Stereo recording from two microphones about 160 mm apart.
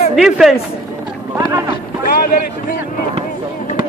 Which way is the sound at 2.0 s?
65° left (ahead or behind).